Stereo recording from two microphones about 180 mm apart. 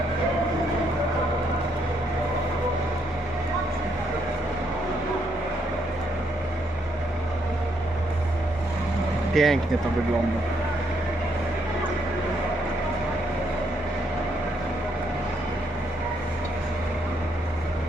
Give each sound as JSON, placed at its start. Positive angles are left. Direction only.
{"t": 9.3, "sound": "speech", "side_deg": 0}